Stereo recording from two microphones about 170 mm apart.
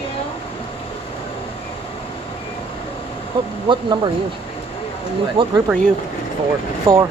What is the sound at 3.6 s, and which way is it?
Speech, 25° right (ahead or behind).